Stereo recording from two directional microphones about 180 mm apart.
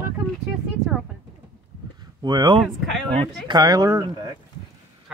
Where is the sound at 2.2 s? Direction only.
25° right (ahead or behind).